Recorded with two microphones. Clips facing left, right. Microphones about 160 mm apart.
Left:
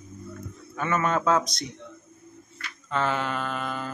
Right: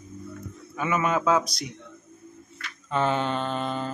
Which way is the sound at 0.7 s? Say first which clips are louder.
Even; 5° right (ahead or behind).